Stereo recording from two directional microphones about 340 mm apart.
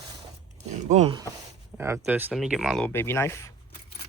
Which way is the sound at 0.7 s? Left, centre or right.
Centre.